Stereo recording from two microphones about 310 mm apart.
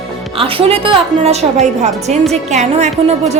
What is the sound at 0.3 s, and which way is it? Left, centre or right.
A woman's voice, centre.